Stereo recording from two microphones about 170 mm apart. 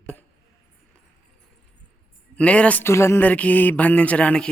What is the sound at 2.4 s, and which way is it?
Speech, 5° left (ahead or behind).